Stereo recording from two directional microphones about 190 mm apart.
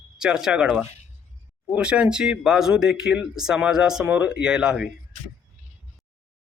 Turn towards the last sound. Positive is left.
turn(degrees=-5)  # may be behind; listen again after turning